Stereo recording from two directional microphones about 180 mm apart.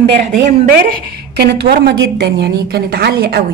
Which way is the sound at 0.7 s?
55° right (ahead or behind).